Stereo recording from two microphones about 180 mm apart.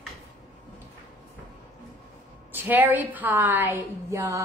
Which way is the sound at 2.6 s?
10° right (ahead or behind).